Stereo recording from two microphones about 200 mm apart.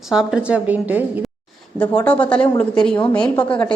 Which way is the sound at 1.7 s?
5° left (ahead or behind).